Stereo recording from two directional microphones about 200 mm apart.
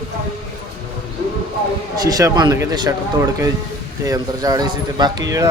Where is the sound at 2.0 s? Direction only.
20° right (ahead or behind).